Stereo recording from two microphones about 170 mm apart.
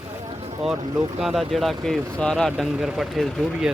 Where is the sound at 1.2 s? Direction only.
Centre (ahead or behind).